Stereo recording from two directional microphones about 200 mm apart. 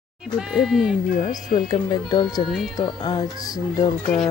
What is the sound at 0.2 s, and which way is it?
Speech, 5° right (ahead or behind).